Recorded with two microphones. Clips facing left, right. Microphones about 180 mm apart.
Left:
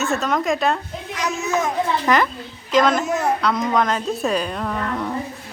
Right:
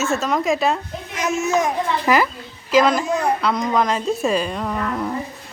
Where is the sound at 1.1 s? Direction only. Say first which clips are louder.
Right 3 dB; 20° right (ahead or behind).